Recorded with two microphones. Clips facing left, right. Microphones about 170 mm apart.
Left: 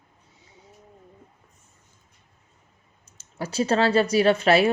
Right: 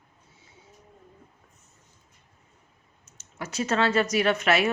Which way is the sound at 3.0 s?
35° left (ahead or behind).